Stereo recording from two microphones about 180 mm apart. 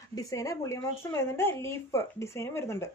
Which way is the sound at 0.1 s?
20° left (ahead or behind).